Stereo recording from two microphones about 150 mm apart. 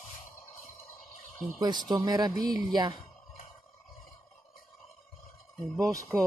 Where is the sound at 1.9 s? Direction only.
25° right (ahead or behind).